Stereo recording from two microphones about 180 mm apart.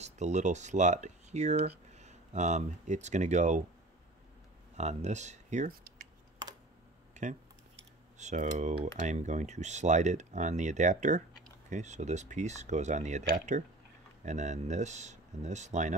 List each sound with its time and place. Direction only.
0.0 s speech: 40° right (ahead or behind)
4.7 s speech: 40° right (ahead or behind)
7.2 s speech: 40° right (ahead or behind)